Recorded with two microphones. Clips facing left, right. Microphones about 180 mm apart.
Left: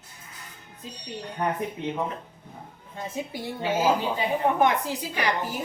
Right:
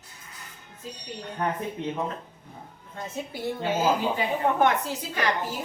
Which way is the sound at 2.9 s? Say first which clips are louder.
Left 2 dB; 15° left (ahead or behind).